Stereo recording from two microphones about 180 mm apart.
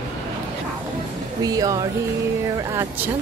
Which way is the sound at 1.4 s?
20° right (ahead or behind).